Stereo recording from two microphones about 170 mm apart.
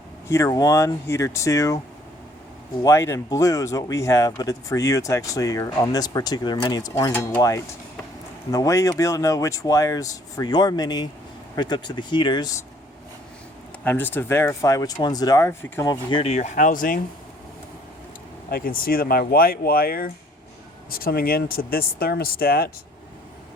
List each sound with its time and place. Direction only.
0.3 s speech: 15° left (ahead or behind)
2.8 s speech: 15° left (ahead or behind)
13.8 s speech: 10° left (ahead or behind); by 17.0 s 55° left (ahead or behind)
18.5 s speech: 60° left (ahead or behind)